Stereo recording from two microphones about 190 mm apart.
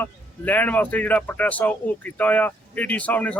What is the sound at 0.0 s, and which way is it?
A man's voice, 10° left (ahead or behind).